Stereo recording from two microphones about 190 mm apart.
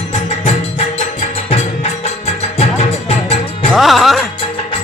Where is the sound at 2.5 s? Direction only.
35° left (ahead or behind).